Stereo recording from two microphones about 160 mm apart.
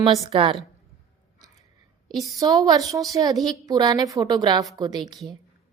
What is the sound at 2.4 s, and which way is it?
Speech, 20° right (ahead or behind).